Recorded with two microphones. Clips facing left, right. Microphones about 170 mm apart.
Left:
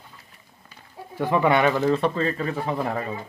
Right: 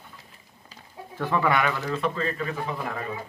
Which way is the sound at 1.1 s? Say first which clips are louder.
Left 4 dB; 15° left (ahead or behind).